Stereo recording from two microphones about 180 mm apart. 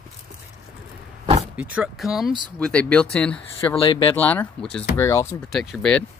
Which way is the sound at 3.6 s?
25° left (ahead or behind).